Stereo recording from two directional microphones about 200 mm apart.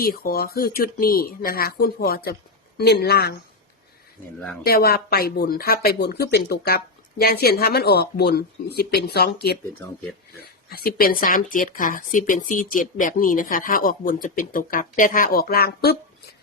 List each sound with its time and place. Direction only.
0.0 s speech: 45° left (ahead or behind)
4.6 s speech: 50° left (ahead or behind)
10.7 s speech: 50° left (ahead or behind)